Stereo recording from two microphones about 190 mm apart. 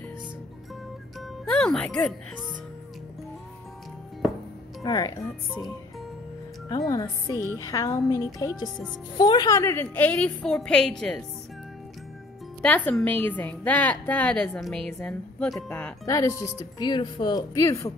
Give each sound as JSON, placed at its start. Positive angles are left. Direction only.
{"t": 1.4, "sound": "speech", "side_deg": 5}
{"t": 4.8, "sound": "speech", "side_deg": 20}
{"t": 6.9, "sound": "a woman's voice", "side_deg": 20}
{"t": 12.6, "sound": "a woman's voice", "side_deg": 5}
{"t": 16.1, "sound": "a woman's voice", "side_deg": 15}